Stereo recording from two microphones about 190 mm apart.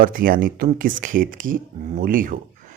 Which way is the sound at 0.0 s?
45° right (ahead or behind).